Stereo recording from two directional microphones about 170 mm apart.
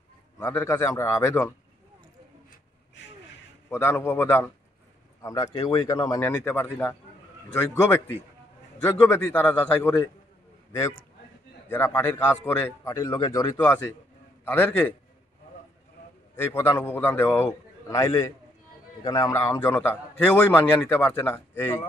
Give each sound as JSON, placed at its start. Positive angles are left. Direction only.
{"t": 0.4, "sound": "a man's voice", "side_deg": 15}
{"t": 3.7, "sound": "a man's voice", "side_deg": 15}
{"t": 11.7, "sound": "a man's voice", "side_deg": 15}
{"t": 13.6, "sound": "a man's voice", "side_deg": 10}
{"t": 16.5, "sound": "a man's voice", "side_deg": 10}